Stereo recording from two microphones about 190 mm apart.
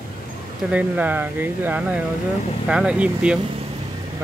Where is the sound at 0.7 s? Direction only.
10° right (ahead or behind).